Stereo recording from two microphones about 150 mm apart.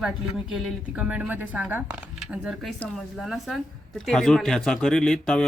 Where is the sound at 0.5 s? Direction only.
5° right (ahead or behind).